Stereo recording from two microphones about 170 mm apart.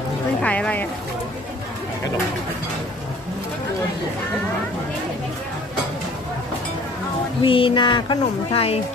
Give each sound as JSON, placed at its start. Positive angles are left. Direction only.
{"t": 0.4, "sound": "speech", "side_deg": 10}
{"t": 7.4, "sound": "speech", "side_deg": 30}